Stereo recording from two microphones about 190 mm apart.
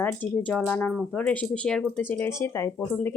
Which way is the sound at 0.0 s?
10° left (ahead or behind).